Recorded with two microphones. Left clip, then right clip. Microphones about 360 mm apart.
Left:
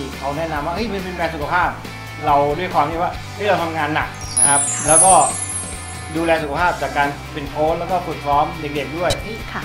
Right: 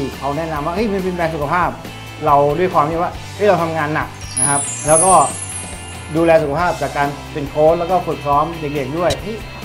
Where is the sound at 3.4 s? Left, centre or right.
Right.